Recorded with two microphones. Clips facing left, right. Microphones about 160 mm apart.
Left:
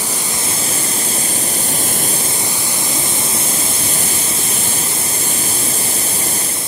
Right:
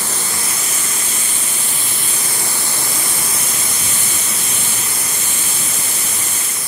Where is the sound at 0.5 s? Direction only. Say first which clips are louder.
Left 5 dB; 30° left (ahead or behind).